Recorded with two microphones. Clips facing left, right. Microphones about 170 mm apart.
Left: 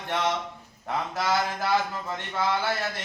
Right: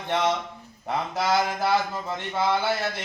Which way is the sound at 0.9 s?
15° right (ahead or behind).